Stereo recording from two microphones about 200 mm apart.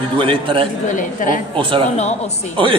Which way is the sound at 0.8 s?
40° left (ahead or behind).